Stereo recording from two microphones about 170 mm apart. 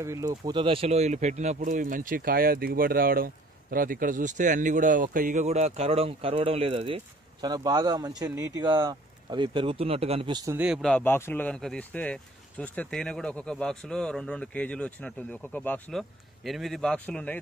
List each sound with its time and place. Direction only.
0.0 s speech: 20° right (ahead or behind); by 7.0 s 35° right (ahead or behind)
7.4 s speech: 20° right (ahead or behind)
10.5 s speech: 10° right (ahead or behind)
10.8 s speech: 5° left (ahead or behind)